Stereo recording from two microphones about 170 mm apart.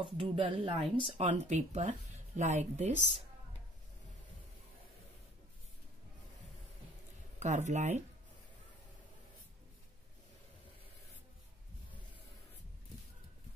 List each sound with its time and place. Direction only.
0.0 s speech: 30° right (ahead or behind)
1.0 s speech: 40° right (ahead or behind)
7.3 s speech: 45° right (ahead or behind)